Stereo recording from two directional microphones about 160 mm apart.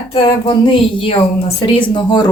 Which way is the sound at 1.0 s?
35° left (ahead or behind).